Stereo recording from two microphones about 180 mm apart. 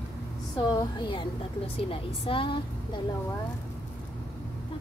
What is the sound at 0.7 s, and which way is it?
A woman's voice, 25° left (ahead or behind).